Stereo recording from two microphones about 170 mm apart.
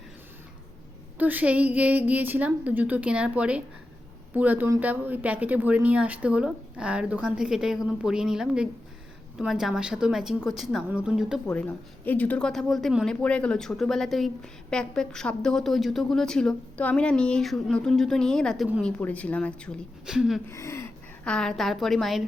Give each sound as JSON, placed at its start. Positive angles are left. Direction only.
{"t": 1.2, "sound": "a woman's voice", "side_deg": -10}
{"t": 12.0, "sound": "a woman's voice", "side_deg": 10}
{"t": 20.5, "sound": "speech", "side_deg": 15}
{"t": 21.2, "sound": "a woman's voice", "side_deg": 5}